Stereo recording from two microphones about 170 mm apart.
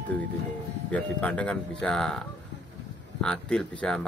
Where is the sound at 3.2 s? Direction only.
5° left (ahead or behind).